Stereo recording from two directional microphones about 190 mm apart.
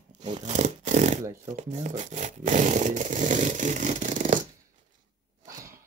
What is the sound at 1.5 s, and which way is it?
Speech, 40° right (ahead or behind).